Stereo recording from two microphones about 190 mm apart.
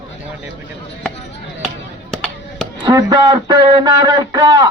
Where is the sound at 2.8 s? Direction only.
20° right (ahead or behind).